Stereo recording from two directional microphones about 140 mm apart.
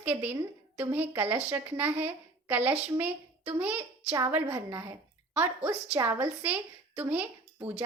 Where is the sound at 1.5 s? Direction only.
15° right (ahead or behind).